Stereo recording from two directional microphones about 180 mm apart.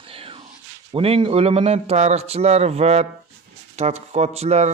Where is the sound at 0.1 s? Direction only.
30° right (ahead or behind).